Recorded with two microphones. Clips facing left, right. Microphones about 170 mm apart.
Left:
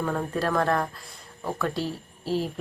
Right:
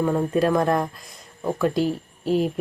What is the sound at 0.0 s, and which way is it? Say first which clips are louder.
Speech: right 7 dB; 20° right (ahead or behind).